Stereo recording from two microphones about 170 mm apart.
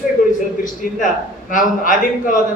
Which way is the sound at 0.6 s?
50° left (ahead or behind).